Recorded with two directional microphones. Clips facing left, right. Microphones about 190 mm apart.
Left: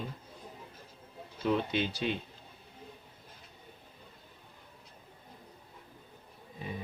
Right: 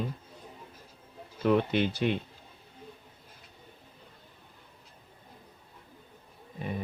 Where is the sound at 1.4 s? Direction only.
55° right (ahead or behind).